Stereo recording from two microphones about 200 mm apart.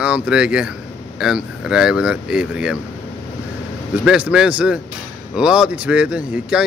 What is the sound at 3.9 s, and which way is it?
Speech, 5° right (ahead or behind).